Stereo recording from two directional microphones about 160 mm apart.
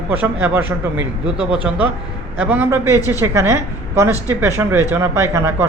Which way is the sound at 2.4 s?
10° right (ahead or behind).